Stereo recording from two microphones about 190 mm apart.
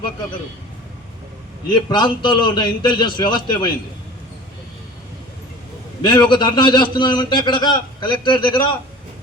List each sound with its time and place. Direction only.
1.7 s a man's voice: 25° left (ahead or behind)
6.0 s a man's voice: 20° left (ahead or behind)